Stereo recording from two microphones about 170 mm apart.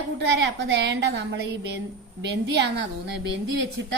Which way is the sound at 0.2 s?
90° right.